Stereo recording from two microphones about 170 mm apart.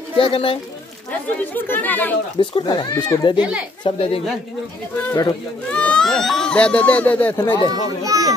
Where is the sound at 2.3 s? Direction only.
30° left (ahead or behind).